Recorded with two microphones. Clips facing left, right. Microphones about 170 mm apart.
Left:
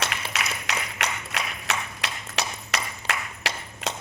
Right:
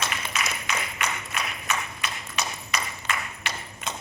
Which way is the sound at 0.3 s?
80° left.